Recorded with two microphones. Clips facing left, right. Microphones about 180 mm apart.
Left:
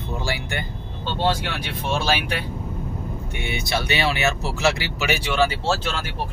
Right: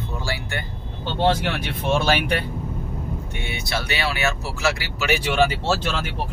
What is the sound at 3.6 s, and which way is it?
Speech, 20° left (ahead or behind).